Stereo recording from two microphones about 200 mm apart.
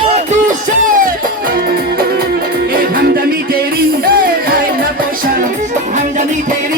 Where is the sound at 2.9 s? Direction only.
50° right (ahead or behind).